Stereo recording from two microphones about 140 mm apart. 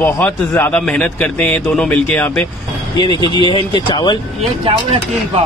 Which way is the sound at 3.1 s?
35° right (ahead or behind).